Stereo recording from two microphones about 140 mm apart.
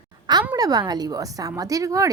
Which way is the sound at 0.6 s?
30° right (ahead or behind).